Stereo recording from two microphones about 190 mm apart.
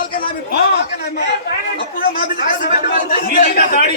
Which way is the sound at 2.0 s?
50° left (ahead or behind).